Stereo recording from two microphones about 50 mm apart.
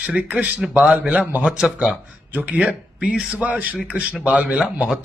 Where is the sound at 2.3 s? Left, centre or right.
Right.